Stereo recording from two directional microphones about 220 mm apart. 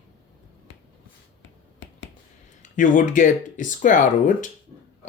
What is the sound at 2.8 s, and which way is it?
Speech, 35° left (ahead or behind).